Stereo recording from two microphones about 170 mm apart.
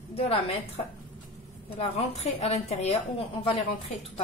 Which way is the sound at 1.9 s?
40° left (ahead or behind).